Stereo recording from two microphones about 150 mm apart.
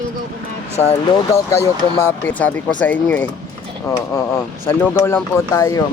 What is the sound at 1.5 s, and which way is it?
Speech, 15° left (ahead or behind).